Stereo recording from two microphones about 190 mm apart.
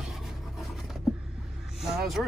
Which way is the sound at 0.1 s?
Centre (ahead or behind).